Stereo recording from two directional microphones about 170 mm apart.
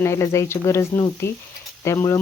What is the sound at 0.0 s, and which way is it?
Speech, 15° left (ahead or behind).